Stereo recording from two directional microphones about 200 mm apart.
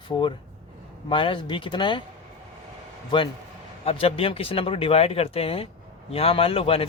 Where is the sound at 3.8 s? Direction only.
30° left (ahead or behind).